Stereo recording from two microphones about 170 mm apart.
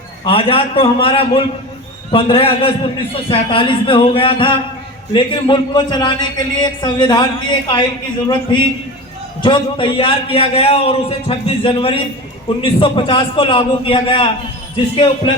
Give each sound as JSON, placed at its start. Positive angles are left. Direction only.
{"t": 0.3, "sound": "a man's voice", "side_deg": 30}